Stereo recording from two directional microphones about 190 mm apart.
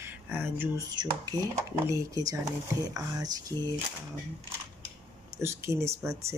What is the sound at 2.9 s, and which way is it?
Speech, 20° right (ahead or behind).